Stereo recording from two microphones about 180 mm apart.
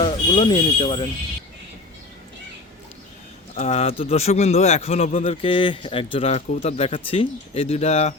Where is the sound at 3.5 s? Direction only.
40° left (ahead or behind).